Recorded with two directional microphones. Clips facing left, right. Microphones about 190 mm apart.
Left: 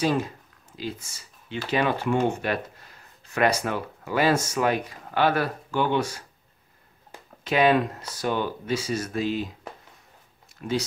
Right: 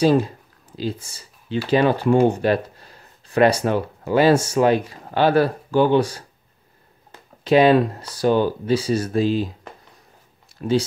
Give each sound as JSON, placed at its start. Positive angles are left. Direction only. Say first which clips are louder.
{"t": 0.0, "sound": "computer keyboard", "louder": "right 8 dB", "side_deg": -35}
{"t": 1.7, "sound": "speech", "louder": "right 7 dB", "side_deg": -35}
{"t": 7.4, "sound": "speech", "louder": "right 6 dB", "side_deg": -30}
{"t": 10.6, "sound": "speech", "louder": "right 7 dB", "side_deg": -35}